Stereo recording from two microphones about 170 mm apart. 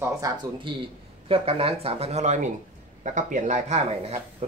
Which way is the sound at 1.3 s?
35° right (ahead or behind).